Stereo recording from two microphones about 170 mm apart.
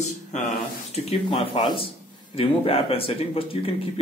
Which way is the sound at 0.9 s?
30° left (ahead or behind).